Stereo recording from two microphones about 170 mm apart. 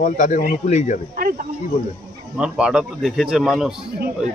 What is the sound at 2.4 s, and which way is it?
Speech, 5° right (ahead or behind).